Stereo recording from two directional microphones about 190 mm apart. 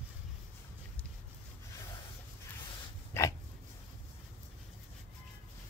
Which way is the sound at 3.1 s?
15° left (ahead or behind).